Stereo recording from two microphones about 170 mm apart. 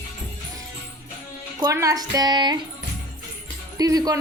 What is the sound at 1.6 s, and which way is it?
Speech, 20° right (ahead or behind).